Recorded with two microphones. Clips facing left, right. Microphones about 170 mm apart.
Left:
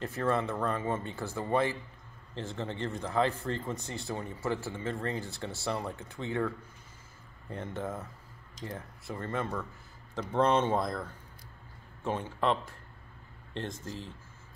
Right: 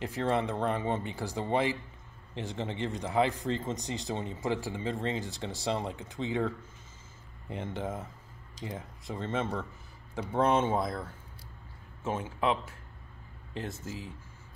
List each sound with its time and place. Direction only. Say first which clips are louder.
0.0 s speech: right 1 dB; 15° right (ahead or behind)
10.1 s speech: even; 10° right (ahead or behind)
12.0 s a man's voice: even; 5° right (ahead or behind)